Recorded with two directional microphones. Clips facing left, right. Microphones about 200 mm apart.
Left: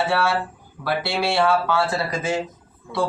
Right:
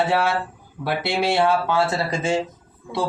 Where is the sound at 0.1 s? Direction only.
20° right (ahead or behind).